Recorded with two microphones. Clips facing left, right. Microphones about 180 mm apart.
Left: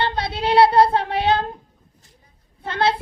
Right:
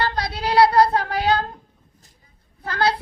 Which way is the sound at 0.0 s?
25° left (ahead or behind).